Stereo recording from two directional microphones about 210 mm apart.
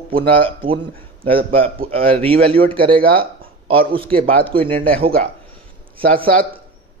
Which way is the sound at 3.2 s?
25° right (ahead or behind).